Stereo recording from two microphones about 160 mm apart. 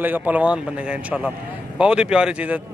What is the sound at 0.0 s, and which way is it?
A man's voice, 10° right (ahead or behind).